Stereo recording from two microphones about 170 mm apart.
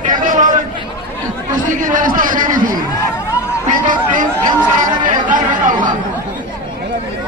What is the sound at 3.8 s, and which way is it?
A man's voice, 50° right (ahead or behind).